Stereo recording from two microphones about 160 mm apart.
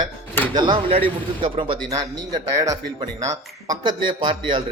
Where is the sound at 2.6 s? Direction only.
20° right (ahead or behind).